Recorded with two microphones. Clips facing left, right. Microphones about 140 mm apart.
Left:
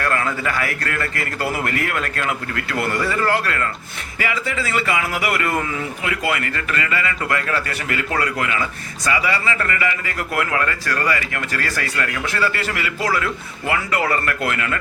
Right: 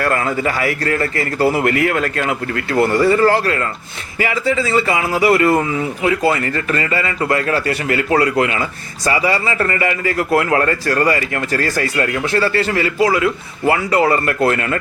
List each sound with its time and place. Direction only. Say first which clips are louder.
0.0 s a man's voice: right 4 dB; 35° right (ahead or behind)
13.7 s speech: right 7 dB; 30° right (ahead or behind)